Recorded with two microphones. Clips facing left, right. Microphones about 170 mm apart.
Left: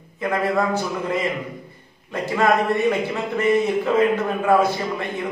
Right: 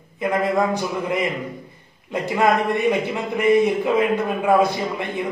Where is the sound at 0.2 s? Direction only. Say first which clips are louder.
Right 1 dB; 15° right (ahead or behind).